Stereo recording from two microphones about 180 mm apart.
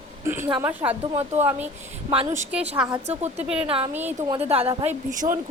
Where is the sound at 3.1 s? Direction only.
35° right (ahead or behind).